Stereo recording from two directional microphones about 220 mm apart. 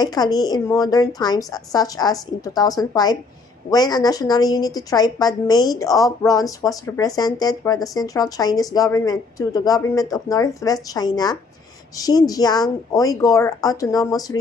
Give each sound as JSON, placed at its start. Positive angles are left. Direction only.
{"t": 0.0, "sound": "a woman's voice", "side_deg": 20}